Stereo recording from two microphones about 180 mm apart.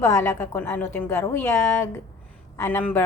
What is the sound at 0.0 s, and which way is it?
A woman's voice, 15° left (ahead or behind).